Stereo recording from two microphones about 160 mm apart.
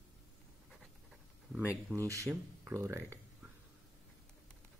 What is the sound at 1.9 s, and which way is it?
Speech, 20° right (ahead or behind).